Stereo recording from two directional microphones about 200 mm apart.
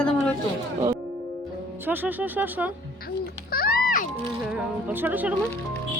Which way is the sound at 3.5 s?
50° left (ahead or behind).